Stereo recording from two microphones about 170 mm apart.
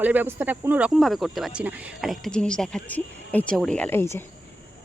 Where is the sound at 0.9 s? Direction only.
Centre (ahead or behind).